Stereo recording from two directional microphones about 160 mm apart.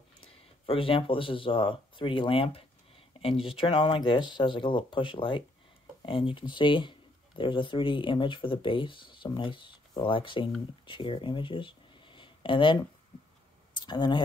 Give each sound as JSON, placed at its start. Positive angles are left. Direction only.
{"t": 0.2, "sound": "speech", "side_deg": 35}
{"t": 13.7, "sound": "speech", "side_deg": 30}